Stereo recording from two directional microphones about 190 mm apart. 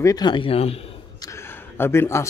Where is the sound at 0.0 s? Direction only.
20° left (ahead or behind).